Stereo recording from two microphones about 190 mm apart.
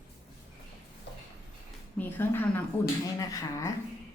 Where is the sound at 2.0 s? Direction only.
10° left (ahead or behind).